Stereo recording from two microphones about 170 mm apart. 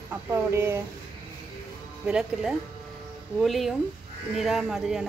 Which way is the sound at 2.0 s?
5° right (ahead or behind).